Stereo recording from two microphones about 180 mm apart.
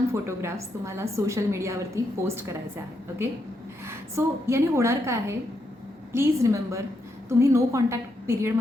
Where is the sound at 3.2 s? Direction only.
15° right (ahead or behind).